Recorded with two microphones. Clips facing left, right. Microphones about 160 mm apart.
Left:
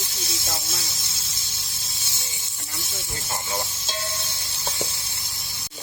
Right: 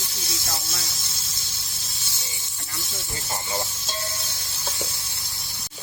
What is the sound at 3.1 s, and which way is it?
Speech, 15° right (ahead or behind).